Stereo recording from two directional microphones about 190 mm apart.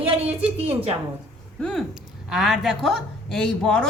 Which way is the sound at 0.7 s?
30° right (ahead or behind).